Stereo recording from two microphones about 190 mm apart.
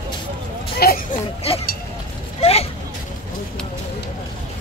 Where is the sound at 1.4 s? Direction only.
30° left (ahead or behind).